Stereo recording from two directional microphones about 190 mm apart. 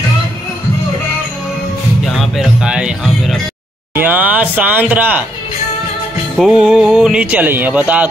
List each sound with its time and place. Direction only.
2.0 s music: centre (ahead or behind)
3.9 s a sound: 10° right (ahead or behind)
6.3 s speech: centre (ahead or behind)